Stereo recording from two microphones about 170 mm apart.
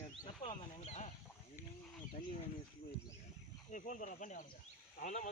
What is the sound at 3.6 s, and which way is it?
Speech, 50° left (ahead or behind).